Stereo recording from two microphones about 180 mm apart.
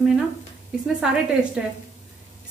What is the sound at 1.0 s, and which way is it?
Speech, 5° right (ahead or behind).